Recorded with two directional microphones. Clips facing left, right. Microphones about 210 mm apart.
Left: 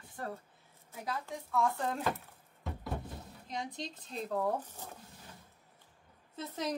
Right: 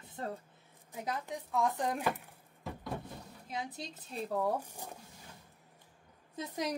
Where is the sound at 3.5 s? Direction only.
5° right (ahead or behind).